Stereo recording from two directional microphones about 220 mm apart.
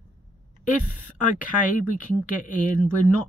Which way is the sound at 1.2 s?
35° left (ahead or behind).